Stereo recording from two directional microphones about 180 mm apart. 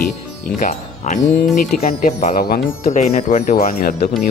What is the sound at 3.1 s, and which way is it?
Speech, 40° left (ahead or behind).